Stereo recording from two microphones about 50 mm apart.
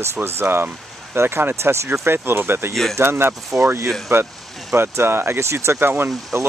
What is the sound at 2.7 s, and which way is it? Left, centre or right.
Speech, centre.